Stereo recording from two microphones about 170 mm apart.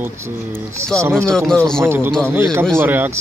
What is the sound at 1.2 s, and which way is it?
Speech, 5° left (ahead or behind).